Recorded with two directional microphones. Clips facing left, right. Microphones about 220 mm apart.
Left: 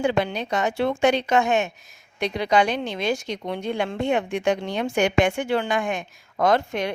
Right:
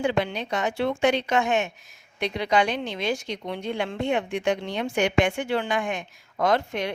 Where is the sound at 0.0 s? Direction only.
45° left (ahead or behind).